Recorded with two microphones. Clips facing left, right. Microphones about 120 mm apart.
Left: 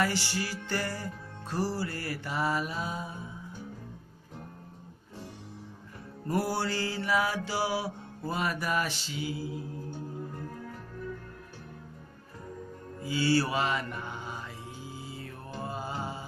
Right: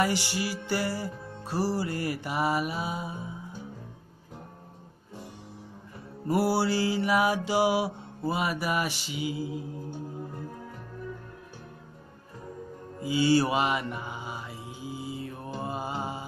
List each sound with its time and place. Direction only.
0.0 s mantra: 15° right (ahead or behind)
6.2 s mantra: 10° right (ahead or behind)
13.0 s mantra: 15° right (ahead or behind)